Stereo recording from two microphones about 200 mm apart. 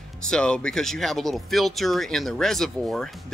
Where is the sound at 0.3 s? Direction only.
5° left (ahead or behind).